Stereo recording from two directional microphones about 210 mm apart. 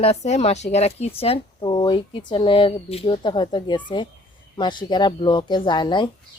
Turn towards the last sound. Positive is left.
turn(degrees=20)  # may be behind; listen again after turning